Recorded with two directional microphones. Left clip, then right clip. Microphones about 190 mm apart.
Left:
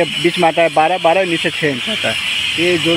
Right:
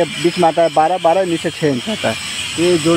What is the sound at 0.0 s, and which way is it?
Speech, centre (ahead or behind).